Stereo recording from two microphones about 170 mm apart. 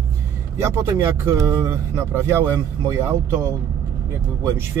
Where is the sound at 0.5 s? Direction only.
15° right (ahead or behind).